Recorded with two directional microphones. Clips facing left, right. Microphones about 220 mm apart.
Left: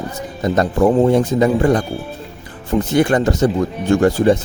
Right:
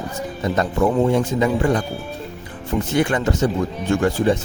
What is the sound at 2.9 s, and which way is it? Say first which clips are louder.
Speech: left 5 dB; 40° left (ahead or behind).